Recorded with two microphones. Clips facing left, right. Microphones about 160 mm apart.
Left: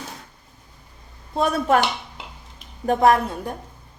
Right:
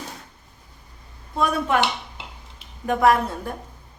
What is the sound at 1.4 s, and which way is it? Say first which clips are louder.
Speech: left 3 dB; 40° left (ahead or behind).